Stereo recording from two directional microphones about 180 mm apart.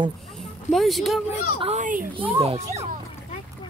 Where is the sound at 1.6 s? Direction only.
40° right (ahead or behind).